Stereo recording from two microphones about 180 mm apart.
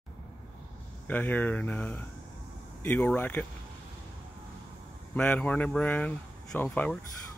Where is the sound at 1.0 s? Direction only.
10° left (ahead or behind).